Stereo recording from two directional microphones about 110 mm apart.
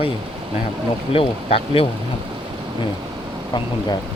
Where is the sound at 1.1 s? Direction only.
60° left (ahead or behind).